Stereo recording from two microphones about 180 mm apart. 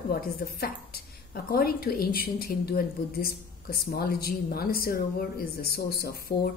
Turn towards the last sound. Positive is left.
turn(degrees=60)  # may be behind; listen again after turning